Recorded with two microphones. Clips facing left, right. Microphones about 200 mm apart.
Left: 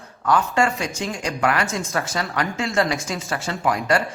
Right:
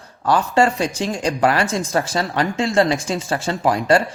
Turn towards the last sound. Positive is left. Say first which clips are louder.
# right 5 dB
turn(degrees=-30)  # may be behind; listen again after turning